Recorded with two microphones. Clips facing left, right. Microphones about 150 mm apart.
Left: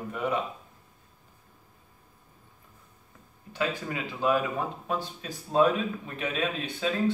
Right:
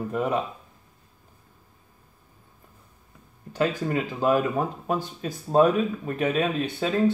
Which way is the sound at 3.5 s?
40° right (ahead or behind).